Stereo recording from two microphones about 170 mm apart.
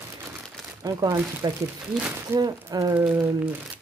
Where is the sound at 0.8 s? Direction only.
20° right (ahead or behind).